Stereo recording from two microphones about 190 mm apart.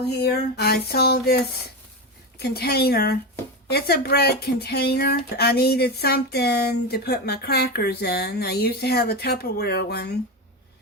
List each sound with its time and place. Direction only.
0.1 s speech: 55° left (ahead or behind)
2.4 s speech: 55° left (ahead or behind)